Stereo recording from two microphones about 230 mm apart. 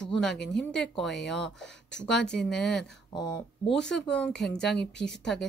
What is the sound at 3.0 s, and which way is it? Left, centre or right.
Speech, centre.